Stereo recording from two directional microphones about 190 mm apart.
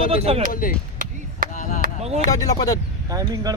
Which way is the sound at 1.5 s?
40° left (ahead or behind).